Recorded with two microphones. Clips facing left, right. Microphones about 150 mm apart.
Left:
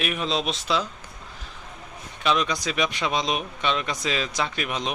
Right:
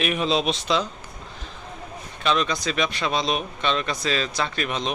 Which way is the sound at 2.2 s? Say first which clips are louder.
Right 1 dB; 15° left (ahead or behind).